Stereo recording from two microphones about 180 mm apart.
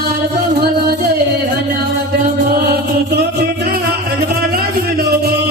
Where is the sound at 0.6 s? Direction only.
60° right (ahead or behind).